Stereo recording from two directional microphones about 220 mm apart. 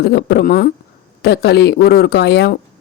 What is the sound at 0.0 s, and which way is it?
Speech, 45° left (ahead or behind).